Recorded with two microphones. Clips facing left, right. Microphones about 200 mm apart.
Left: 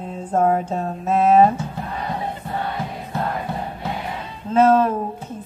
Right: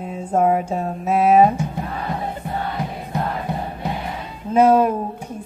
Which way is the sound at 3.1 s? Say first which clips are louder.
Right 1 dB; 15° right (ahead or behind).